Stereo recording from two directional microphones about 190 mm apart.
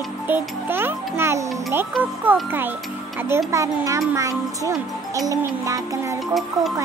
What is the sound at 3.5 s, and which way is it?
A child's voice, 15° right (ahead or behind).